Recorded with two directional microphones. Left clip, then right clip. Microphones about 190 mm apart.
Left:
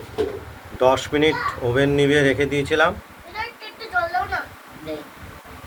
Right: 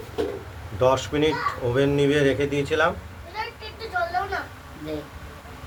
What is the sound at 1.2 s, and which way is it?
Speech, 10° left (ahead or behind).